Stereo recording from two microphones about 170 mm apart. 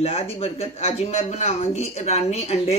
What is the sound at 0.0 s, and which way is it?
Speech, 35° left (ahead or behind).